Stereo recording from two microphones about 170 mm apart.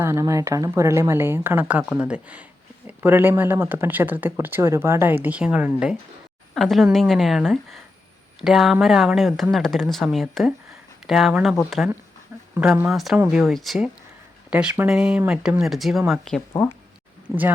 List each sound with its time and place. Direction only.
0.0 s speech: 15° right (ahead or behind); by 11.9 s centre (ahead or behind)
12.5 s speech: 10° right (ahead or behind)
12.9 s speech: centre (ahead or behind)
17.2 s speech: 10° right (ahead or behind)